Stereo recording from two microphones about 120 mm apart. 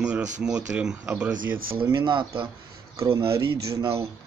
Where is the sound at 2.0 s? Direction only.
40° right (ahead or behind).